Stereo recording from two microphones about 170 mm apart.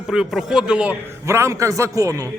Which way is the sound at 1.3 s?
15° right (ahead or behind).